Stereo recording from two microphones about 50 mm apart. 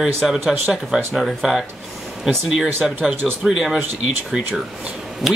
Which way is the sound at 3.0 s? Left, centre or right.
Right.